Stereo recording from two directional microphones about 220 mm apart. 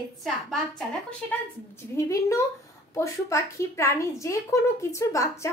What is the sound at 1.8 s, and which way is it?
A woman's voice, 15° left (ahead or behind).